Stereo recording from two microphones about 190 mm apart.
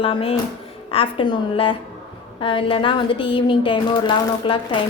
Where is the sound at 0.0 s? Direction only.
30° left (ahead or behind).